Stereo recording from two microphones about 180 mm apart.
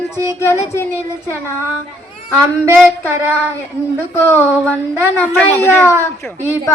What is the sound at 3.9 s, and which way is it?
A woman's voice, 15° left (ahead or behind).